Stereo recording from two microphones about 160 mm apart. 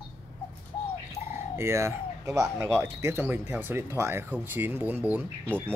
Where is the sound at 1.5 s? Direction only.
15° right (ahead or behind).